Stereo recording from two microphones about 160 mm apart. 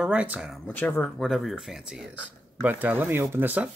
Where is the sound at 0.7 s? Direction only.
10° left (ahead or behind); by 3.7 s 10° right (ahead or behind).